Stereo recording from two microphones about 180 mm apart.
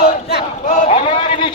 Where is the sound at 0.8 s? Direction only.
30° left (ahead or behind).